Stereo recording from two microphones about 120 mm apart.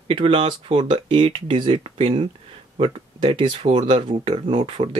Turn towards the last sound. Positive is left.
turn(degrees=-50)  # may be behind; listen again after turning